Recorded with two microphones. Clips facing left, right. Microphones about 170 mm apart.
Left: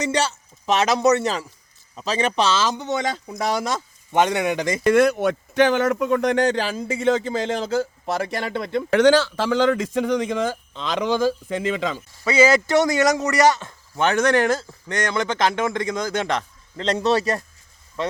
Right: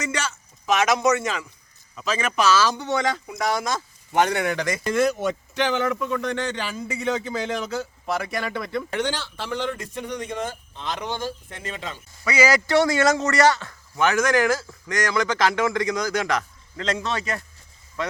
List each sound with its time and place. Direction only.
0.0 s a man's voice: 35° left (ahead or behind)
3.2 s speech: 35° left (ahead or behind)
4.2 s a man's voice: 20° left (ahead or behind)
4.9 s speech: 60° left (ahead or behind); by 8.9 s 25° left (ahead or behind)
8.9 s speech: 90° left
12.2 s a man's voice: 25° left (ahead or behind)